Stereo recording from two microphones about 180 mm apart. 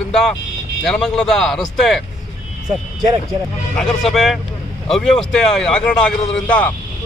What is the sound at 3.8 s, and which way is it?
A man's voice, centre (ahead or behind).